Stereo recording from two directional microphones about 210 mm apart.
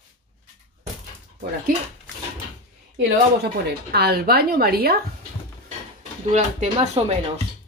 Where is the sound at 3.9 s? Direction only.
50° right (ahead or behind).